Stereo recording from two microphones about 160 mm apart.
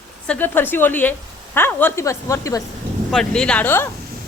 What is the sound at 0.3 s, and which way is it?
A woman's voice, 10° left (ahead or behind).